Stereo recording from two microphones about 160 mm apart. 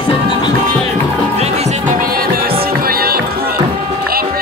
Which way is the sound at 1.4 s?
45° right (ahead or behind).